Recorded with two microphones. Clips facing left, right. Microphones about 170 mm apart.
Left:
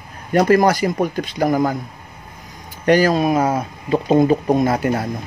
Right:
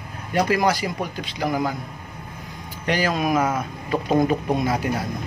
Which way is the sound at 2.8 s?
40° left (ahead or behind).